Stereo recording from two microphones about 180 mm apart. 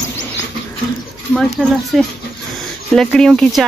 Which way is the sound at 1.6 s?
Centre (ahead or behind).